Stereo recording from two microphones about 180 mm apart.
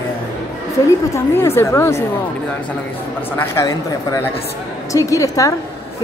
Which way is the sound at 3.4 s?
15° left (ahead or behind).